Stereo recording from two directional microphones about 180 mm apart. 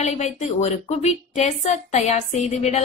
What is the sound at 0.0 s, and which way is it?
A woman's voice, 40° left (ahead or behind).